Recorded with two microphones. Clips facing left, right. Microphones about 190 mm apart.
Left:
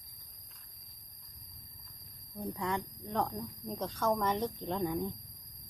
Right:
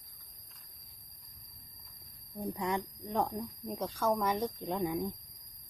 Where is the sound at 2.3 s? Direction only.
15° right (ahead or behind).